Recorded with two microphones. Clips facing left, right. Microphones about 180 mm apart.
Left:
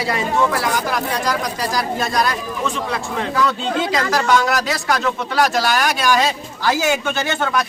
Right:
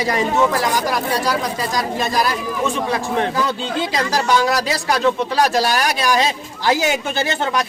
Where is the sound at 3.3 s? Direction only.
35° right (ahead or behind).